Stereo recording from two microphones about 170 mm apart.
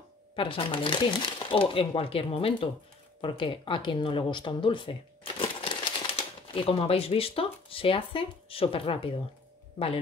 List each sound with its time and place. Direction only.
0.4 s speech: 30° left (ahead or behind)